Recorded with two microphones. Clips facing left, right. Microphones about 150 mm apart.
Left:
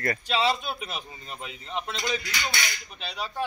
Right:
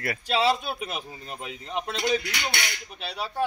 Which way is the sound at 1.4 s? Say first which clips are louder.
Right 2 dB; 50° right (ahead or behind).